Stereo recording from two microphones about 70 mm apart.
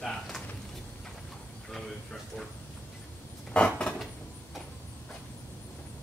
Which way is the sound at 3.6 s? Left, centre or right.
Centre.